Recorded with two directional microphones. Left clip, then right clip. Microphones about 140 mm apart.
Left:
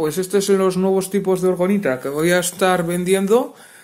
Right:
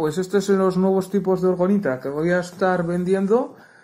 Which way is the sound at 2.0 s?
75° left (ahead or behind).